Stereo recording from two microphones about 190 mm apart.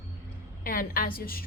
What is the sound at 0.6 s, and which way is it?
Speech, 50° left (ahead or behind).